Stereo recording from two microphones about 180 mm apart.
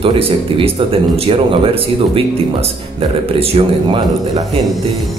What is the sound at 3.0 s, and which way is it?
Speech, 30° right (ahead or behind).